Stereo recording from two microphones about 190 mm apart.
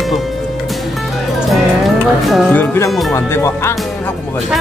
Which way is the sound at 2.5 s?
10° left (ahead or behind).